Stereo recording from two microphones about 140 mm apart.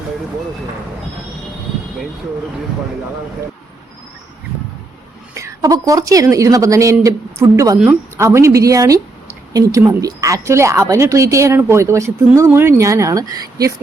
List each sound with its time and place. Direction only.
5.3 s a woman's voice: 20° right (ahead or behind)